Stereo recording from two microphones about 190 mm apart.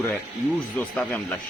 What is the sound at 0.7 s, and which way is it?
Speech, 5° left (ahead or behind).